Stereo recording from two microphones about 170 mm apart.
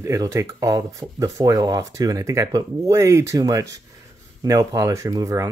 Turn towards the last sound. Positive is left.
turn(degrees=-20)  # may be behind; listen again after turning